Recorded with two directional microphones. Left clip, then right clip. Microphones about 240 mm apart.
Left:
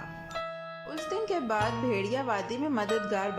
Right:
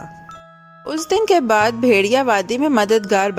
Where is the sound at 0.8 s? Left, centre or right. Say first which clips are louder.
Right 16 dB; right.